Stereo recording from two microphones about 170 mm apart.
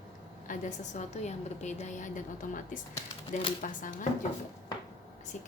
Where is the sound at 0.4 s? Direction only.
45° left (ahead or behind).